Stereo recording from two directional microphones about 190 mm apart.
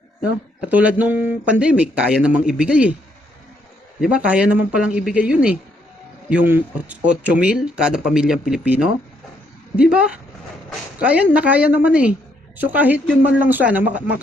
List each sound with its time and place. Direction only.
0.6 s speech: 10° right (ahead or behind)
4.0 s speech: 5° right (ahead or behind)